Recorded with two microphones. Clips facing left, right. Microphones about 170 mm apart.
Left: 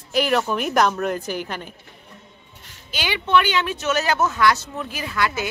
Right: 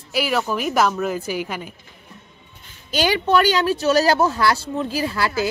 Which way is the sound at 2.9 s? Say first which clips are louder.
Right 3 dB; 40° right (ahead or behind).